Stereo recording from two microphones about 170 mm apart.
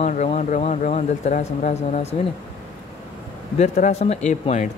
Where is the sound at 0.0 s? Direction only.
45° left (ahead or behind).